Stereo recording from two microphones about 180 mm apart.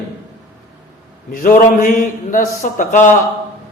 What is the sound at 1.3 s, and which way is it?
A man's voice, 50° left (ahead or behind).